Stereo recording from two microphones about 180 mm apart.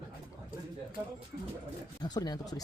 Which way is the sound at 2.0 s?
20° left (ahead or behind).